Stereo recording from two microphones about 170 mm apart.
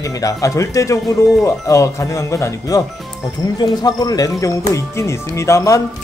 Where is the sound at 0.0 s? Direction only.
20° left (ahead or behind).